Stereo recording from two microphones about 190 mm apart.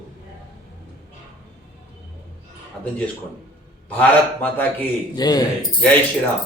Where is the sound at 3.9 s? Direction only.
10° left (ahead or behind).